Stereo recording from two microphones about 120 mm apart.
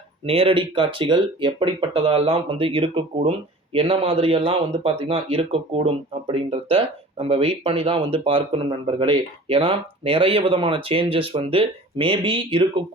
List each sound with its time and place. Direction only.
0.3 s speech: 50° right (ahead or behind)